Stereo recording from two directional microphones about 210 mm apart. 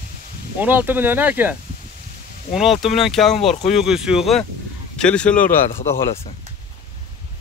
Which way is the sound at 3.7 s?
Centre (ahead or behind).